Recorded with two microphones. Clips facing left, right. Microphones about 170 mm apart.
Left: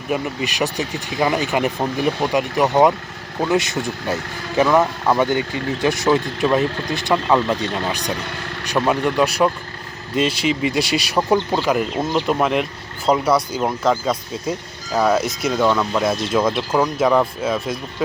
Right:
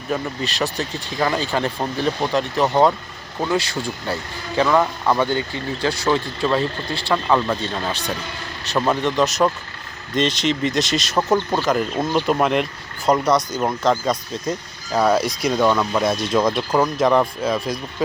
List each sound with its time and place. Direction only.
0.1 s speech: 15° left (ahead or behind)
4.8 s speech: 5° left (ahead or behind)
5.3 s speech: 20° left (ahead or behind)
8.9 s speech: 10° left (ahead or behind)